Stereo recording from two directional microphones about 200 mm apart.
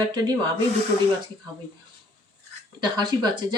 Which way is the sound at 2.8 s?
20° right (ahead or behind).